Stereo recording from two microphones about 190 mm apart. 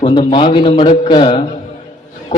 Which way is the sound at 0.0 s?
25° left (ahead or behind).